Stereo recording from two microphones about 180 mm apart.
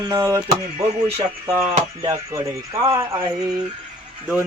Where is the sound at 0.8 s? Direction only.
35° right (ahead or behind).